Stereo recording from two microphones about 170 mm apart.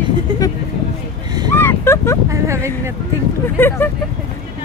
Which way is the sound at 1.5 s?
15° left (ahead or behind).